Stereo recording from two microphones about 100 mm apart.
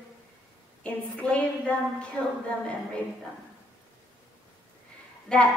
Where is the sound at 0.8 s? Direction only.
15° left (ahead or behind).